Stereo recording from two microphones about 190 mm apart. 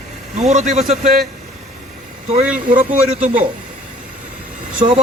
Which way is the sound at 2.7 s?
45° right (ahead or behind).